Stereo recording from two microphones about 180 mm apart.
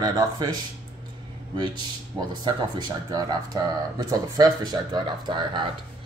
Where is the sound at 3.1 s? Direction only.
20° right (ahead or behind).